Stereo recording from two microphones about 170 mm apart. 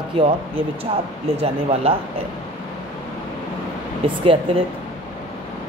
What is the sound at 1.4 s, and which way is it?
Speech, 35° right (ahead or behind).